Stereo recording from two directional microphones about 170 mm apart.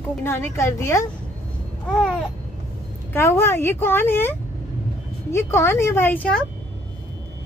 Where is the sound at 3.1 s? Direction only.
15° left (ahead or behind).